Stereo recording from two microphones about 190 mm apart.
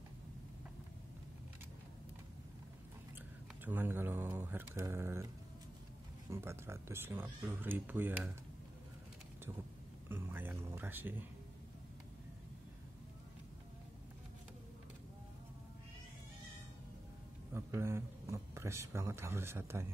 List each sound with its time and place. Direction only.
3.6 s speech: 10° right (ahead or behind)
6.3 s speech: 15° right (ahead or behind)
10.0 s a sound: 10° right (ahead or behind)
17.5 s a man's voice: 15° right (ahead or behind)